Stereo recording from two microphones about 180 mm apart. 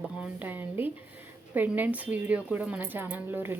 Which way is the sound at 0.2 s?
10° right (ahead or behind).